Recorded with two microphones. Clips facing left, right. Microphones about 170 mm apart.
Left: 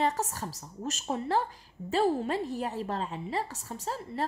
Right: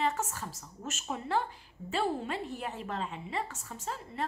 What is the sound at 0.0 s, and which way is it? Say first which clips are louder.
A woman's voice: left 3 dB; 35° left (ahead or behind).